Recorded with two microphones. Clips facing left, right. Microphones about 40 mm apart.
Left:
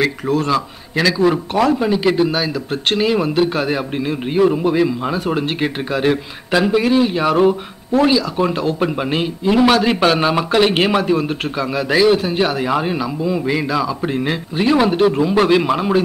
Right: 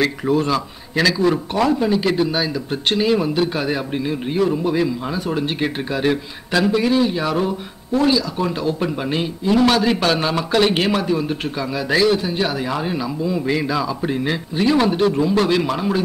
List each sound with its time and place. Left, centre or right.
0.2 s a man's voice: centre
0.9 s a man's voice: centre; by 7.5 s left
7.9 s a man's voice: centre